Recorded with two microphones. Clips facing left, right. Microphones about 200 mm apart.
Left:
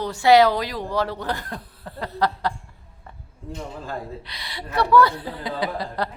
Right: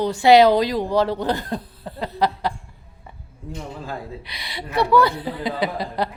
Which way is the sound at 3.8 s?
10° right (ahead or behind).